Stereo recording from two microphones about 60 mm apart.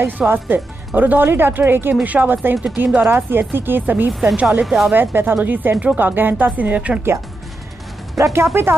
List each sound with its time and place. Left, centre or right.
0.3 s speech: right
2.5 s speech: centre
3.0 s a woman's voice: right
4.6 s speech: centre
4.9 s speech: right
8.2 s speech: right